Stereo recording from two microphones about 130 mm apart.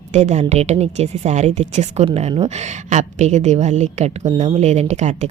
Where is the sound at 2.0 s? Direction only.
50° right (ahead or behind).